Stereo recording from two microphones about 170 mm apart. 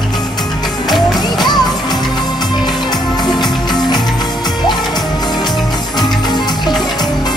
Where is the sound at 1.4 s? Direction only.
25° left (ahead or behind).